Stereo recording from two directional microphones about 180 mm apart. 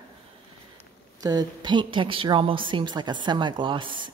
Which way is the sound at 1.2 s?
25° right (ahead or behind).